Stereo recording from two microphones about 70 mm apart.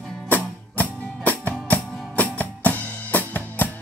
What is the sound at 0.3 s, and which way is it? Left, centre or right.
Music, left.